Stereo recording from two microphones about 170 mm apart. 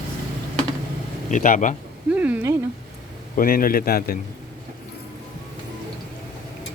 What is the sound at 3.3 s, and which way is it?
Speech, 55° left (ahead or behind).